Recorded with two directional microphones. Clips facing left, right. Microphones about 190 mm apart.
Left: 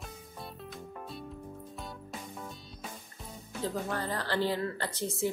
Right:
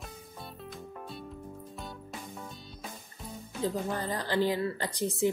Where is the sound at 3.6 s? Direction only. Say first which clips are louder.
Right 2 dB; 15° right (ahead or behind).